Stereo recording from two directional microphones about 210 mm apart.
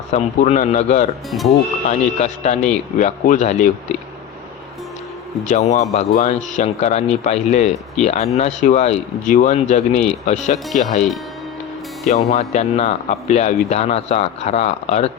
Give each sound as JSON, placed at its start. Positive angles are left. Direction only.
{"t": 0.1, "sound": "speech", "side_deg": 35}
{"t": 5.5, "sound": "speech", "side_deg": 35}
{"t": 12.1, "sound": "speech", "side_deg": 35}